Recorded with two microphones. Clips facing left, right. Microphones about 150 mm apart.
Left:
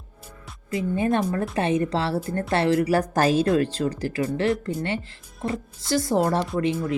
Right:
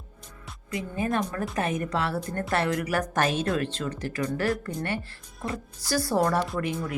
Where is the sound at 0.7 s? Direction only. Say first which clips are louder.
Left 5 dB; 30° left (ahead or behind).